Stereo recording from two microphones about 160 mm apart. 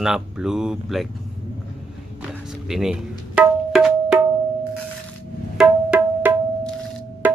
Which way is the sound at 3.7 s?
5° right (ahead or behind).